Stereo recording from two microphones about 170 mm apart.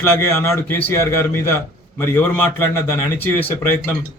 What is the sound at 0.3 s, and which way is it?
A man's voice, 15° left (ahead or behind).